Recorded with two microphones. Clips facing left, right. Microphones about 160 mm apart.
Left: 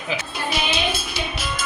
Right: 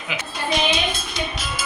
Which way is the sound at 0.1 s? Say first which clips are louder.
Left 2 dB; 35° left (ahead or behind).